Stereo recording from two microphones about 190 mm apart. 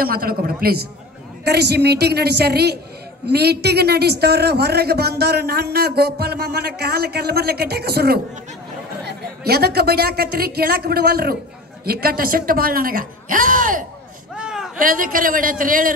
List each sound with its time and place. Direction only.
0.0 s speech: 50° right (ahead or behind)
14.3 s a sound: 5° right (ahead or behind)
14.8 s speech: 45° right (ahead or behind)